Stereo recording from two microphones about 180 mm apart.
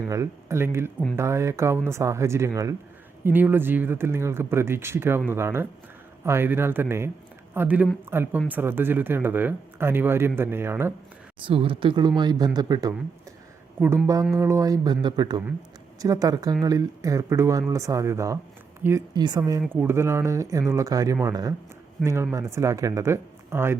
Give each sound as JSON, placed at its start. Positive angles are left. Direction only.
{"t": 0.1, "sound": "speech", "side_deg": -15}
{"t": 11.4, "sound": "speech", "side_deg": -30}